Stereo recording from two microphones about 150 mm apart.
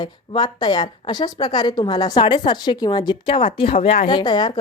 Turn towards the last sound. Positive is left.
turn(degrees=30)  # may be behind; listen again after turning